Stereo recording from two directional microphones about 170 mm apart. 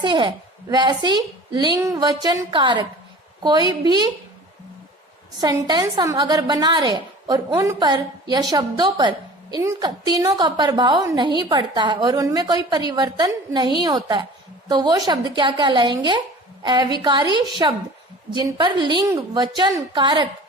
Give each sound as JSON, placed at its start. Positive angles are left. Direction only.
{"t": 0.0, "sound": "a woman's voice", "side_deg": -30}
{"t": 5.4, "sound": "a woman's voice", "side_deg": -25}